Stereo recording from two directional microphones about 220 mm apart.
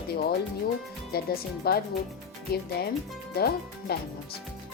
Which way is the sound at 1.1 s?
45° left (ahead or behind).